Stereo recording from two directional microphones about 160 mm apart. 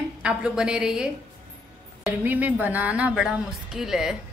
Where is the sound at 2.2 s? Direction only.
10° right (ahead or behind).